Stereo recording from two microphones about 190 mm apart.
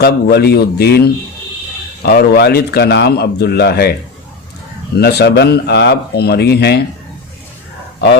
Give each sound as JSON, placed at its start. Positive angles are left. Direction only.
{"t": 0.0, "sound": "a man's voice", "side_deg": 55}
{"t": 4.9, "sound": "a man's voice", "side_deg": 60}